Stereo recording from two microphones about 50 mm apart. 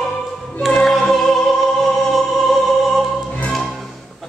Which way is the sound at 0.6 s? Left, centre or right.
Centre.